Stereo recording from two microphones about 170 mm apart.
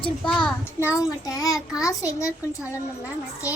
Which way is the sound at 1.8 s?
20° left (ahead or behind).